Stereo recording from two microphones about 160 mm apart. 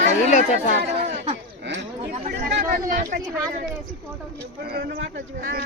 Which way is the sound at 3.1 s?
70° right (ahead or behind).